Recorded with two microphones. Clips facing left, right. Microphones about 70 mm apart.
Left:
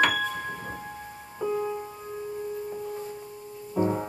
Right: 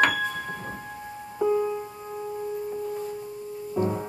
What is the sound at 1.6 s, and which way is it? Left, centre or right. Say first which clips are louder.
Music: right 2 dB; centre.